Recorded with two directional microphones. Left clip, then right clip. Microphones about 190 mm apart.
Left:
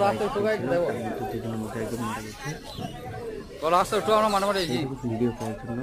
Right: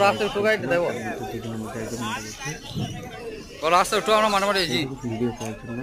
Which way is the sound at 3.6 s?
5° right (ahead or behind).